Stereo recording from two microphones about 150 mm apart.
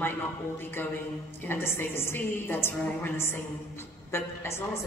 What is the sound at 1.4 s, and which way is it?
A woman's voice, 15° left (ahead or behind).